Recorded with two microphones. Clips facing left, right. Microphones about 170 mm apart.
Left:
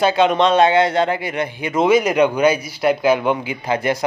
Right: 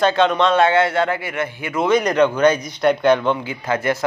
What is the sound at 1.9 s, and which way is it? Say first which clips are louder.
A man's voice: left 1 dB; 5° left (ahead or behind).